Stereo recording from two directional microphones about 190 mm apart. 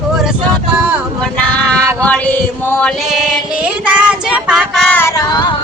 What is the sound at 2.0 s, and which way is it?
Female singing, 10° left (ahead or behind).